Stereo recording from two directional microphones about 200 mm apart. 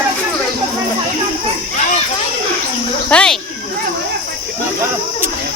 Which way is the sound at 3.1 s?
5° left (ahead or behind).